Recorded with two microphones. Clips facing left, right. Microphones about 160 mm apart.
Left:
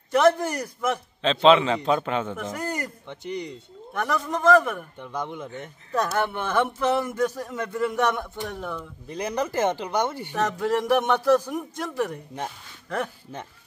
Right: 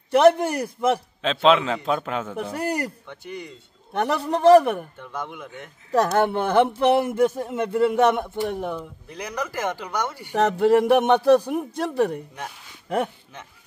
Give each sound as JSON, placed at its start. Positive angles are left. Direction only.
{"t": 0.1, "sound": "speech", "side_deg": -30}
{"t": 1.2, "sound": "a man's voice", "side_deg": 0}
{"t": 2.5, "sound": "a man's voice", "side_deg": -35}
{"t": 3.1, "sound": "speech", "side_deg": 20}
{"t": 3.9, "sound": "a man's voice", "side_deg": -35}
{"t": 4.9, "sound": "speech", "side_deg": 15}
{"t": 6.3, "sound": "speech", "side_deg": -30}
{"t": 9.1, "sound": "speech", "side_deg": 25}
{"t": 10.3, "sound": "speech", "side_deg": -30}
{"t": 11.1, "sound": "speech", "side_deg": -15}
{"t": 11.5, "sound": "a man's voice", "side_deg": -30}